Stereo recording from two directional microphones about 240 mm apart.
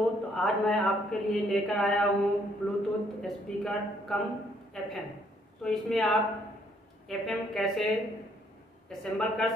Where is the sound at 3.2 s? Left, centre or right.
Centre.